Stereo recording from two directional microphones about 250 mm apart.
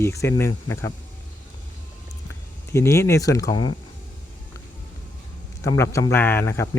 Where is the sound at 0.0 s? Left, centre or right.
Centre.